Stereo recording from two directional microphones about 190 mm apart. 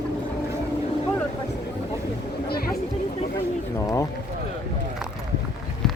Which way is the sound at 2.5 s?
55° left (ahead or behind).